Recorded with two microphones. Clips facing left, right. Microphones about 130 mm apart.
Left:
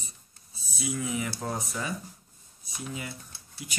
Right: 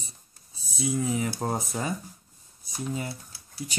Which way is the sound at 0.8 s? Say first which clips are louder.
Right 4 dB; 35° right (ahead or behind).